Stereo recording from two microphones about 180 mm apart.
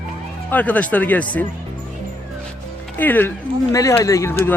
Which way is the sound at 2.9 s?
10° left (ahead or behind).